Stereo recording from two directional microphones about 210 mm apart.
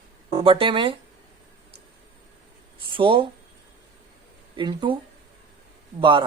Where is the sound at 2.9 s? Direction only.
25° right (ahead or behind).